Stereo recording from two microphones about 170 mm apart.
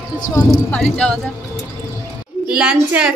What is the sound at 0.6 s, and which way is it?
Speech, 5° left (ahead or behind).